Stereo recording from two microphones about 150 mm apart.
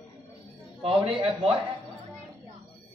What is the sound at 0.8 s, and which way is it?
Speech, 40° right (ahead or behind).